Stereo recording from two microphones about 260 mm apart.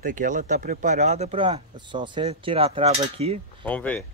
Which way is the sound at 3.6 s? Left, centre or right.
Centre.